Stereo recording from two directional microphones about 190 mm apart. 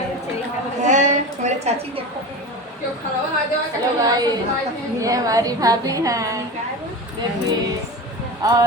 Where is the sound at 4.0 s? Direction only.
20° right (ahead or behind).